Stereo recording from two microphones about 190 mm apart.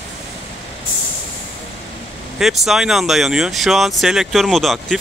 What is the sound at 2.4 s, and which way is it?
Speech, centre (ahead or behind).